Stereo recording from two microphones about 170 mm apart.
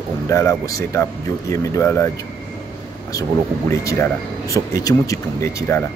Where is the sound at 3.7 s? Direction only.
20° left (ahead or behind).